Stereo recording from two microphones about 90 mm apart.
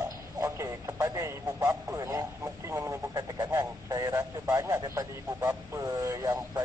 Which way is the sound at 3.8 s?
45° right (ahead or behind).